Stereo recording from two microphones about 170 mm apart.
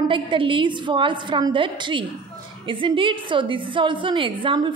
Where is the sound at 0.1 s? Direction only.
30° right (ahead or behind).